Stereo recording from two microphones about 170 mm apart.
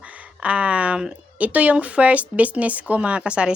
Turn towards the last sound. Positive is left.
turn(degrees=-5)  # may be behind; listen again after turning